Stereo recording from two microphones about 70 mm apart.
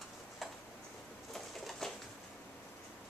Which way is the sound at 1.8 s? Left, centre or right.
Centre.